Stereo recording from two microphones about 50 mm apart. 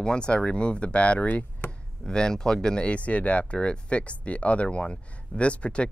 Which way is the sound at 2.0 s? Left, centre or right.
Centre.